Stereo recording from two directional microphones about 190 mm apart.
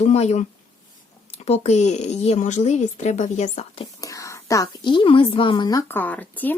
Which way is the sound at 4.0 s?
15° left (ahead or behind).